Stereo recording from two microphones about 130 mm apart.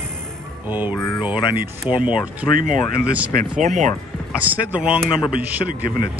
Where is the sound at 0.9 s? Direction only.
20° left (ahead or behind).